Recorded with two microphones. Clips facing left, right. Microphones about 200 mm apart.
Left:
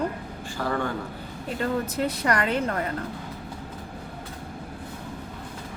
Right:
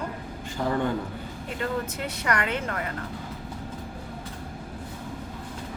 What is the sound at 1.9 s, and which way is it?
Speech, 35° left (ahead or behind).